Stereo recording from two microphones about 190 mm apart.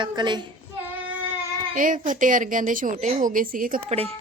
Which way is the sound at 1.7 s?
45° right (ahead or behind).